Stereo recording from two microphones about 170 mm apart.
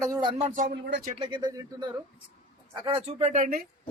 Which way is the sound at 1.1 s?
30° right (ahead or behind).